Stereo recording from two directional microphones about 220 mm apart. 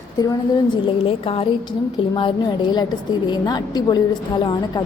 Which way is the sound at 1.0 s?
25° left (ahead or behind).